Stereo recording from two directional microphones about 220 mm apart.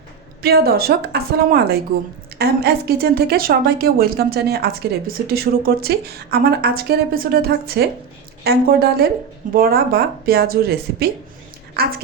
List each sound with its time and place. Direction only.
0.4 s speech: 45° right (ahead or behind)